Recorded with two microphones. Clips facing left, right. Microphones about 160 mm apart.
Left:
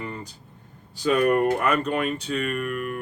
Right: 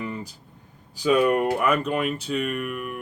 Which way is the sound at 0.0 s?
10° right (ahead or behind).